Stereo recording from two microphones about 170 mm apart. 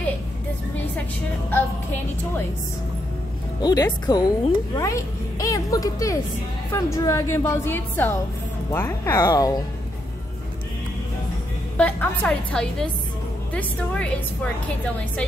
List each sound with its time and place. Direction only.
1.5 s a woman's voice: 10° left (ahead or behind)
3.6 s a child's voice: 25° left (ahead or behind)
11.7 s a woman's voice: 10° left (ahead or behind)